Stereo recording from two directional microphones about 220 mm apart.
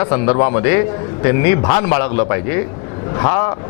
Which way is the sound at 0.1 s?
25° left (ahead or behind).